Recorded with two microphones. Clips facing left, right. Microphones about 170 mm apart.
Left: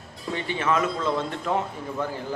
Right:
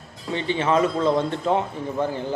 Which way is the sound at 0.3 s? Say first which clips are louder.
Right 4 dB; 30° right (ahead or behind).